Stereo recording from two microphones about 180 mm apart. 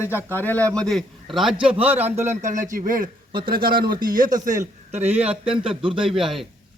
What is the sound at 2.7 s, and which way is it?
A man's voice, 50° right (ahead or behind).